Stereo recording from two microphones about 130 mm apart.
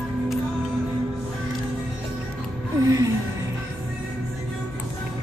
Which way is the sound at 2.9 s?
25° right (ahead or behind).